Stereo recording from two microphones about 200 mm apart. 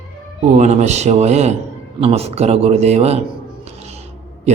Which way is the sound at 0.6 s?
35° right (ahead or behind).